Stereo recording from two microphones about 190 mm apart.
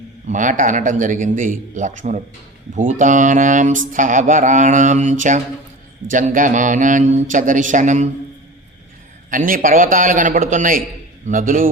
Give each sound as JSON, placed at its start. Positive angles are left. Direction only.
{"t": 0.3, "sound": "a man's voice", "side_deg": -40}
{"t": 2.7, "sound": "mantra", "side_deg": -40}
{"t": 6.1, "sound": "a man's voice", "side_deg": -45}
{"t": 9.3, "sound": "a man's voice", "side_deg": -45}